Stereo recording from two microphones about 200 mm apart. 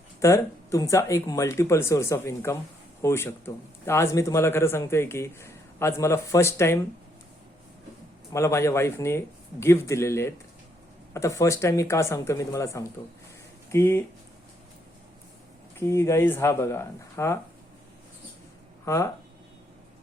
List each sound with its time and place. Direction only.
0.2 s a man's voice: 15° left (ahead or behind)
8.3 s a man's voice: 15° left (ahead or behind)
15.8 s a man's voice: 15° left (ahead or behind)
18.9 s a man's voice: 15° left (ahead or behind)